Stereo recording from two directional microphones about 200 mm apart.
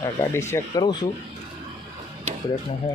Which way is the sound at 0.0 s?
15° left (ahead or behind).